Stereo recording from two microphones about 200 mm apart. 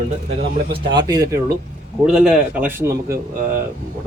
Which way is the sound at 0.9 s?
20° right (ahead or behind).